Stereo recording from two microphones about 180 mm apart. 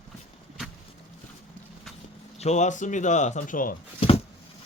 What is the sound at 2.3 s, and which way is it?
Speech, 40° left (ahead or behind).